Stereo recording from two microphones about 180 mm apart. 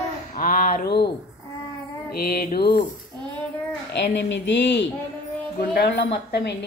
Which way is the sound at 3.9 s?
75° left (ahead or behind).